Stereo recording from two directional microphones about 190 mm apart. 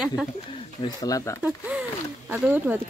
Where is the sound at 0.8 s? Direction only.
20° left (ahead or behind).